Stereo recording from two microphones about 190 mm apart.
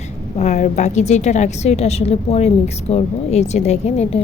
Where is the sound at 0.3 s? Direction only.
40° left (ahead or behind).